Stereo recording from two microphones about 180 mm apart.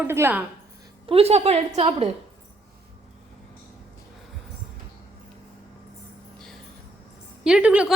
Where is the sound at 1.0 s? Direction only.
35° right (ahead or behind).